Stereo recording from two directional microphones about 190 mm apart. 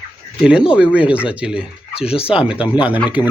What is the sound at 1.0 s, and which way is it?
Speech, 5° right (ahead or behind).